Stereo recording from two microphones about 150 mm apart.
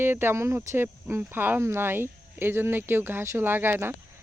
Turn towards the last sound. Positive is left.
turn(degrees=-15)  # may be behind; listen again after turning